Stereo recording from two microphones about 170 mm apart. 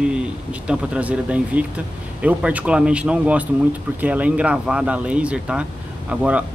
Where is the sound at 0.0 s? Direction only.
5° right (ahead or behind).